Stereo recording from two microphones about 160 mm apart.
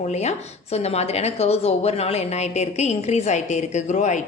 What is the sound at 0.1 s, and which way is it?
A woman's voice, 45° left (ahead or behind).